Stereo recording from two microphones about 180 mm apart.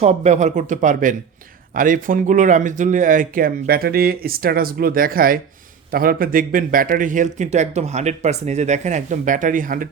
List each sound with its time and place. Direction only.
0.0 s speech: 40° right (ahead or behind)